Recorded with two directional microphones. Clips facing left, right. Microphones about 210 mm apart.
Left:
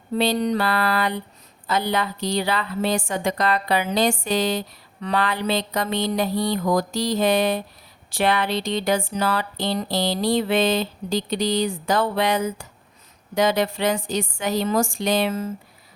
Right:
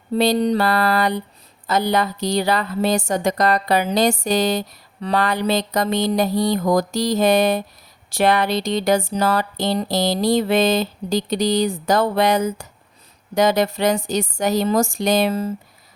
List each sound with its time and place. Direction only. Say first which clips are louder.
0.1 s a woman's voice: right 4 dB; 35° right (ahead or behind)